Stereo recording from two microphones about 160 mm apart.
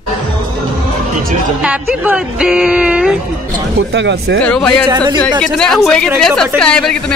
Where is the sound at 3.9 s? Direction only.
90° right.